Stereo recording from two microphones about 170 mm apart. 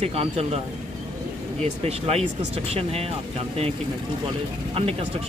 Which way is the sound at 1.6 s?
40° right (ahead or behind).